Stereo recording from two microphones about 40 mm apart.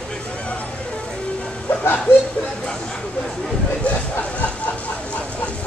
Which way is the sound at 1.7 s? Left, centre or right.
Left.